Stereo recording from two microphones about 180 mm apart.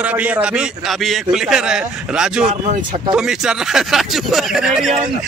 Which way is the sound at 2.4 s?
45° right (ahead or behind).